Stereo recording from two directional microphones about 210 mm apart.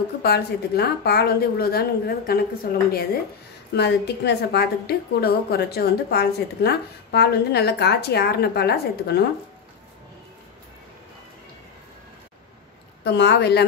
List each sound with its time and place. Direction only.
0.2 s a woman's voice: 50° left (ahead or behind)
13.0 s a woman's voice: 55° left (ahead or behind)